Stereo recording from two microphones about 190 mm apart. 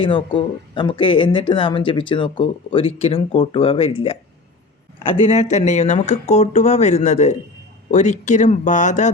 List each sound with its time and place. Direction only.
0.0 s speech: 25° left (ahead or behind)
5.2 s speech: 35° left (ahead or behind)